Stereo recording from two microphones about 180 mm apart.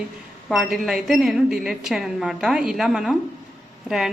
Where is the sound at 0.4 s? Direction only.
Centre (ahead or behind).